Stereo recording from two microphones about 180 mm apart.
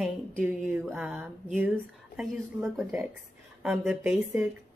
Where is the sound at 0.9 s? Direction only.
10° right (ahead or behind).